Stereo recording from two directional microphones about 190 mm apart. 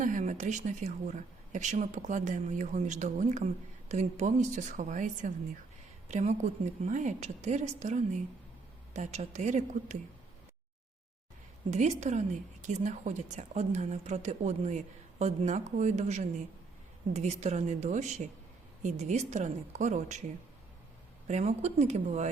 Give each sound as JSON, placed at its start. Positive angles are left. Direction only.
{"t": 0.0, "sound": "speech", "side_deg": -40}
{"t": 11.7, "sound": "speech", "side_deg": -35}
{"t": 21.2, "sound": "speech", "side_deg": -35}